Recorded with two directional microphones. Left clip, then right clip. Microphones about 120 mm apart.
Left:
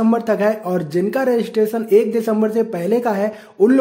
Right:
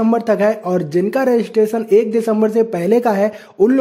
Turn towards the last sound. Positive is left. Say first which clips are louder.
# even
turn(degrees=-30)  # may be behind; listen again after turning